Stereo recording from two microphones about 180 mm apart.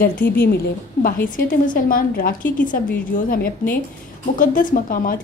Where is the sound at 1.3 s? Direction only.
50° left (ahead or behind).